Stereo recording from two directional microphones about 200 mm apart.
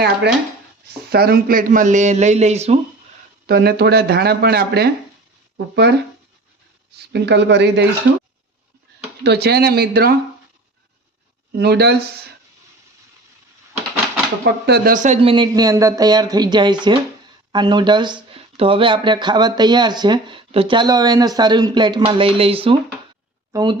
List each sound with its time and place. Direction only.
1.1 s speech: 50° right (ahead or behind); by 2.8 s 30° right (ahead or behind)
3.4 s speech: 50° right (ahead or behind)
7.1 s speech: 60° right (ahead or behind)
9.2 s speech: 55° right (ahead or behind)
11.5 s speech: 55° right (ahead or behind)
14.4 s speech: 50° right (ahead or behind); by 23.7 s 20° right (ahead or behind)